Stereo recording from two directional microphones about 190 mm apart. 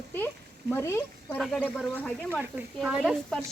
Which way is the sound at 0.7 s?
15° left (ahead or behind).